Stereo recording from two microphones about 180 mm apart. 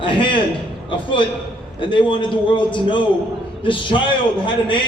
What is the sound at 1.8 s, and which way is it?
A man's voice, 30° left (ahead or behind).